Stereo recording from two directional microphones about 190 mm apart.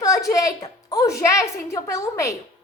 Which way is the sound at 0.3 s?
15° left (ahead or behind).